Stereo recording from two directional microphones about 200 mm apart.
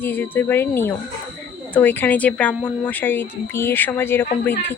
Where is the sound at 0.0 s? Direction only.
10° left (ahead or behind).